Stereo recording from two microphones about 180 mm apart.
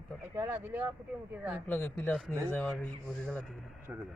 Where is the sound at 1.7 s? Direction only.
5° left (ahead or behind).